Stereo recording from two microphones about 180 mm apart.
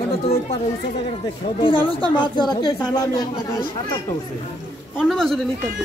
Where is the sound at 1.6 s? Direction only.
30° left (ahead or behind).